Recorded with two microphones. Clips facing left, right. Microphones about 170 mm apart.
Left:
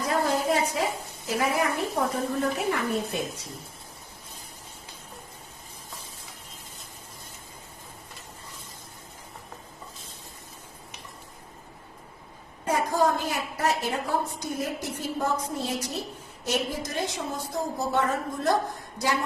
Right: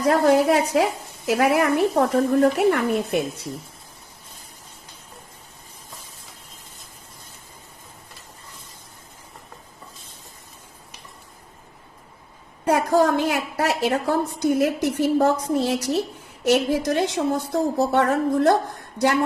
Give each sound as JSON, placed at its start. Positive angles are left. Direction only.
{"t": 0.0, "sound": "a woman's voice", "side_deg": -70}
{"t": 12.6, "sound": "a woman's voice", "side_deg": -75}